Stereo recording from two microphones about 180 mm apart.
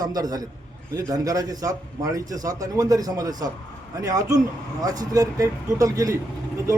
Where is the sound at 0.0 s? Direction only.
20° right (ahead or behind).